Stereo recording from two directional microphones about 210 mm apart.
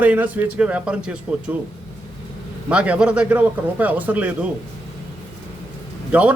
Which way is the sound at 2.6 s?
5° right (ahead or behind).